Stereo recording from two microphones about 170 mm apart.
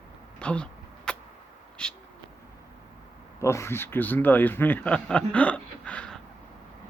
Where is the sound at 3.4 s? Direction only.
15° left (ahead or behind).